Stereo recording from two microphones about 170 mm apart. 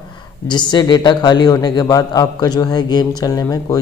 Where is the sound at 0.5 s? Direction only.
25° left (ahead or behind).